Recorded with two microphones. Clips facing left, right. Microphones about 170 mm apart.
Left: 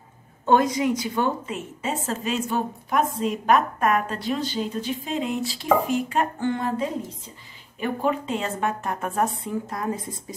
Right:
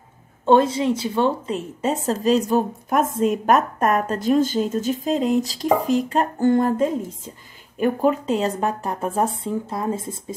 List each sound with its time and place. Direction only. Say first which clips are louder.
0.5 s a woman's voice: right 3 dB; 30° right (ahead or behind)